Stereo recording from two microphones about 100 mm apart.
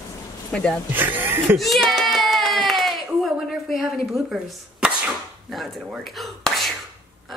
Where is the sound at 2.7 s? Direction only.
Centre (ahead or behind).